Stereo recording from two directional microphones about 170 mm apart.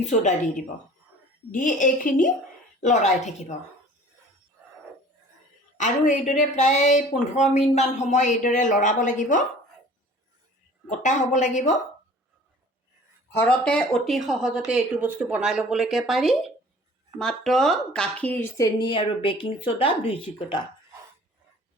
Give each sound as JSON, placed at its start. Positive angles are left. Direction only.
{"t": 0.0, "sound": "speech", "side_deg": 45}
{"t": 5.7, "sound": "speech", "side_deg": 45}
{"t": 10.8, "sound": "speech", "side_deg": 45}
{"t": 13.3, "sound": "speech", "side_deg": 10}